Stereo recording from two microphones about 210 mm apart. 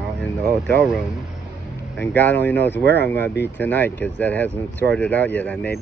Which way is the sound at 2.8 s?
50° right (ahead or behind).